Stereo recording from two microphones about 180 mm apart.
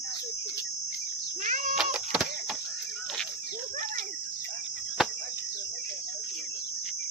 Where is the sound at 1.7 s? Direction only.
5° right (ahead or behind).